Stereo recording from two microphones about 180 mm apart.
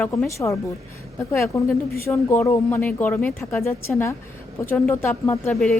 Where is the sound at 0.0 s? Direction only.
10° left (ahead or behind).